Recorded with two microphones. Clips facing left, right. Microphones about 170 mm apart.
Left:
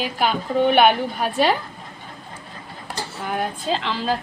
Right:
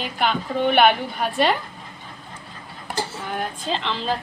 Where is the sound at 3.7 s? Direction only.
5° left (ahead or behind).